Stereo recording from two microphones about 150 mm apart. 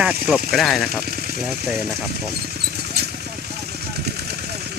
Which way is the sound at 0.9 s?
90° right.